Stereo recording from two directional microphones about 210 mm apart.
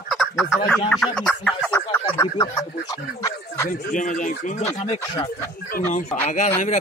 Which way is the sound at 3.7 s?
40° left (ahead or behind).